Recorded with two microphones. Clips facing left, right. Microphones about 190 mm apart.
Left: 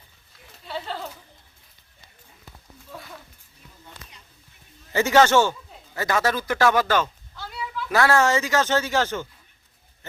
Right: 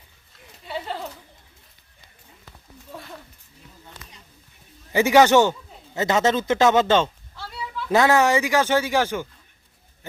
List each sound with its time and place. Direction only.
4.9 s a man's voice: 15° right (ahead or behind)
7.3 s a sound: centre (ahead or behind)
7.9 s speech: 20° right (ahead or behind)